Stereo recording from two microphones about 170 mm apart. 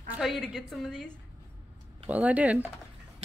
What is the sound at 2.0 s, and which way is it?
Speech, 10° right (ahead or behind).